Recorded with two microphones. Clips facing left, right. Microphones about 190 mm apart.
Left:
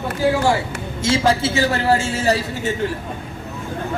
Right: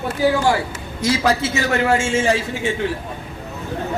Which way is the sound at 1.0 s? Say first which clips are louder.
Left 1 dB; 25° left (ahead or behind).